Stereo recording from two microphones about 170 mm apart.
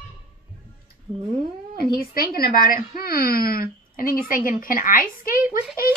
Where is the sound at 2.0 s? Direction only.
60° left (ahead or behind).